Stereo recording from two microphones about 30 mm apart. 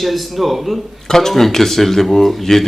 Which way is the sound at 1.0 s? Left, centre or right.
Centre.